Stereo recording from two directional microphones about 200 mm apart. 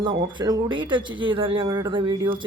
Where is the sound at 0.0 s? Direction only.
25° right (ahead or behind).